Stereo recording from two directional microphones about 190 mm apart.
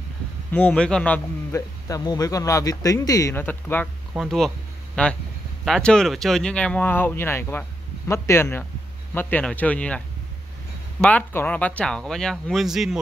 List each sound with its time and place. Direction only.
0.5 s a man's voice: 5° left (ahead or behind)